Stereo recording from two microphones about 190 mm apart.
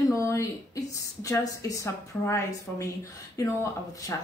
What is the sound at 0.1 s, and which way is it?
Speech, 15° left (ahead or behind).